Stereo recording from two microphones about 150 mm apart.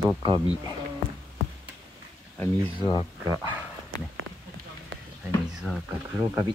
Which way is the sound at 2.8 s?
30° left (ahead or behind).